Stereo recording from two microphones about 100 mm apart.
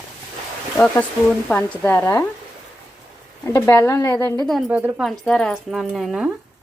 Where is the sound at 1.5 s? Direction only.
15° left (ahead or behind).